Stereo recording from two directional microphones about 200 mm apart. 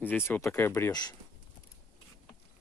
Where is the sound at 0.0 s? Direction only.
10° left (ahead or behind).